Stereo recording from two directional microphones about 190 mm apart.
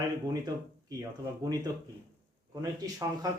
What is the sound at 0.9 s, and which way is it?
Speech, 20° right (ahead or behind).